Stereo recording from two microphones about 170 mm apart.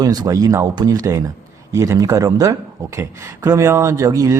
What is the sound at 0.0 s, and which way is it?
A man's voice, 25° right (ahead or behind).